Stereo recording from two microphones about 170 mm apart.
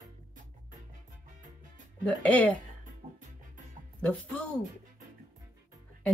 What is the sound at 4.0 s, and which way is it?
Speech, 10° left (ahead or behind).